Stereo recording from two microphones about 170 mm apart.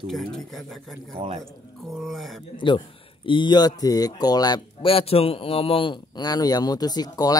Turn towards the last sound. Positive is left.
turn(degrees=20)  # may be behind; listen again after turning